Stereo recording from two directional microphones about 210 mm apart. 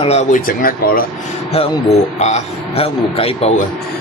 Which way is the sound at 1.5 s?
30° left (ahead or behind).